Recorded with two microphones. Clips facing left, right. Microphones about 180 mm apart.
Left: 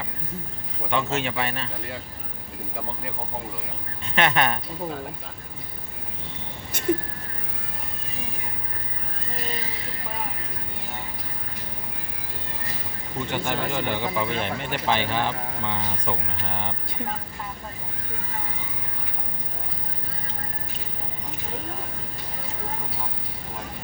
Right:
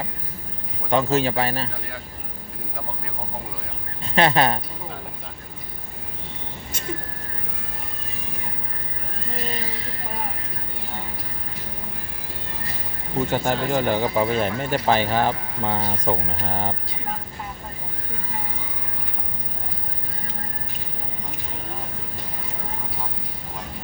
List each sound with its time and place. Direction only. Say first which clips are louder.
0.9 s speech: right 6 dB; 35° right (ahead or behind)
4.0 s speech: right 4 dB; 35° right (ahead or behind)
6.7 s vehicle: left 7 dB; 55° left (ahead or behind)
13.1 s speech: right 5 dB; 40° right (ahead or behind)